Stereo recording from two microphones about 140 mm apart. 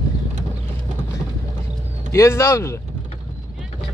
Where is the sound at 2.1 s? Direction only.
20° left (ahead or behind).